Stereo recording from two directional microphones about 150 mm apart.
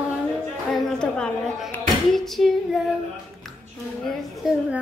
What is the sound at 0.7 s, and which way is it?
Speech, 5° left (ahead or behind).